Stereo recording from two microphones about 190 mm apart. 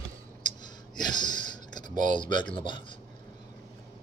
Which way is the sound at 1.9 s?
40° right (ahead or behind).